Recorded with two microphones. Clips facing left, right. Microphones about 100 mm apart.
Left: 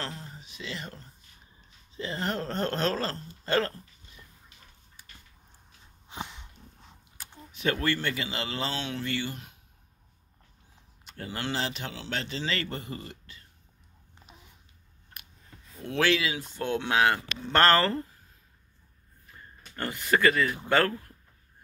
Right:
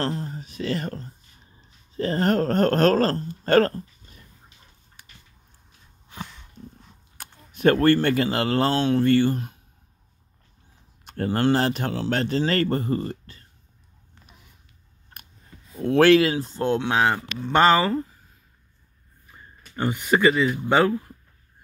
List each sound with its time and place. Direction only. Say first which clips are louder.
0.0 s speech: right 11 dB; 40° right (ahead or behind)
5.0 s a sound: right 3 dB; 75° right (ahead or behind)
6.0 s a sound: right 1 dB; 20° left (ahead or behind)
7.2 s speech: right 10 dB; 50° right (ahead or behind)
11.1 s speech: right 13 dB; 50° right (ahead or behind)
14.2 s a sound: left 1 dB; 20° left (ahead or behind)
15.8 s speech: right 11 dB; 45° right (ahead or behind)
16.3 s speech: right 8 dB; 30° right (ahead or behind)
16.8 s speech: right 3 dB; 15° right (ahead or behind)
19.7 s speech: right 5 dB; 20° right (ahead or behind)